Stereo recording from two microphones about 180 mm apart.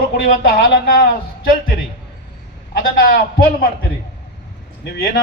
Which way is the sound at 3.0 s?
55° left (ahead or behind).